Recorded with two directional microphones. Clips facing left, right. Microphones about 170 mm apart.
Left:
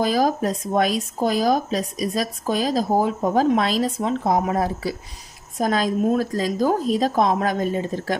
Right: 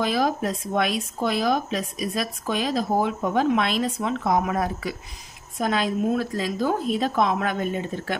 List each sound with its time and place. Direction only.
0.0 s speech: 40° left (ahead or behind)